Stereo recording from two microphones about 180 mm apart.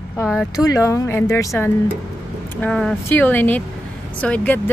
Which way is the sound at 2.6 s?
5° left (ahead or behind).